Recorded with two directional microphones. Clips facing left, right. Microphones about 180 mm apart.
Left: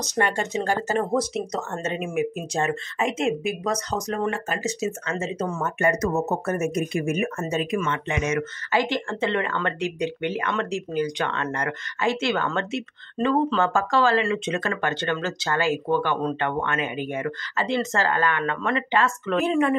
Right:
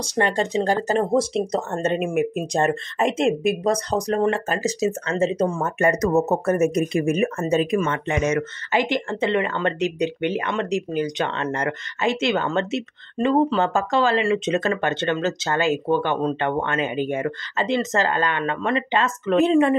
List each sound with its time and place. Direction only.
0.0 s speech: 30° right (ahead or behind)
8.7 s speech: 15° right (ahead or behind)